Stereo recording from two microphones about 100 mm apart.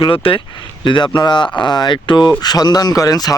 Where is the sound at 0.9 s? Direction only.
50° left (ahead or behind).